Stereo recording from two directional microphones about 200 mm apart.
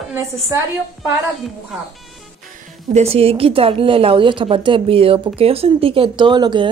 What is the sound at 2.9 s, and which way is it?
A woman's voice, 30° right (ahead or behind).